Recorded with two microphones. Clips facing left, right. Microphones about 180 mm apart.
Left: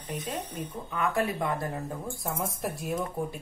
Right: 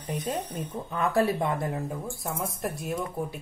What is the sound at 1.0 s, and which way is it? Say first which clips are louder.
Speech: right 4 dB; 35° right (ahead or behind).